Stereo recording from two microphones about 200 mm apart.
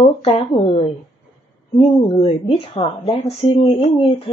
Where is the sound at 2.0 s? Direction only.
25° left (ahead or behind).